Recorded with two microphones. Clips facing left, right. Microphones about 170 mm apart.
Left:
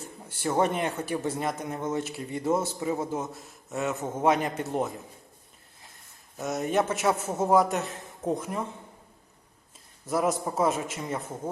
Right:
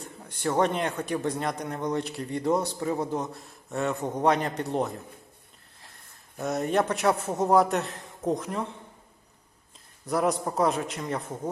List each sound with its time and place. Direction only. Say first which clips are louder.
0.0 s speech: right 1 dB; 5° left (ahead or behind)
6.3 s speech: right 1 dB; centre (ahead or behind)
10.1 s speech: right 1 dB; centre (ahead or behind)